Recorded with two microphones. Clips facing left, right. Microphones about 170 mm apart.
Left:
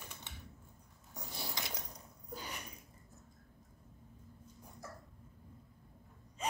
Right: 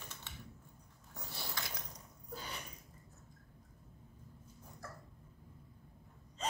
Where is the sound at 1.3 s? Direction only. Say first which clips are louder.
Left 1 dB; 15° left (ahead or behind).